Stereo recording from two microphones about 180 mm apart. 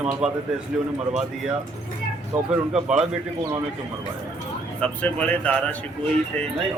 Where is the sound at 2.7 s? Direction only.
5° right (ahead or behind).